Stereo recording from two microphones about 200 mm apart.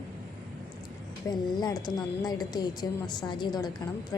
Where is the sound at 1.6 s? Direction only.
20° left (ahead or behind).